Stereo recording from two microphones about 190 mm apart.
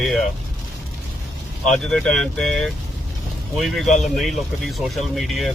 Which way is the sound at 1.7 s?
5° left (ahead or behind).